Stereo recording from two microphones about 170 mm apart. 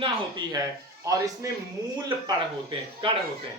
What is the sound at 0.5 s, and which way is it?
Speech, 20° right (ahead or behind).